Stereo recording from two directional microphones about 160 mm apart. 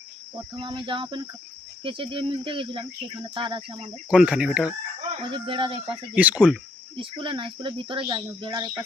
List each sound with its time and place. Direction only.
0.5 s speech: 30° right (ahead or behind)
4.1 s speech: 5° right (ahead or behind)
5.0 s speech: 35° right (ahead or behind)
6.1 s speech: 10° right (ahead or behind)
6.9 s speech: 30° right (ahead or behind)